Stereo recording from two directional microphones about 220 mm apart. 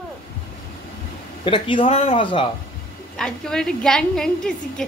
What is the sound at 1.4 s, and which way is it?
Speech, 25° left (ahead or behind).